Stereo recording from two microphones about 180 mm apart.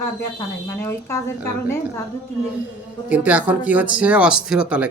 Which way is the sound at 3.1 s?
10° right (ahead or behind).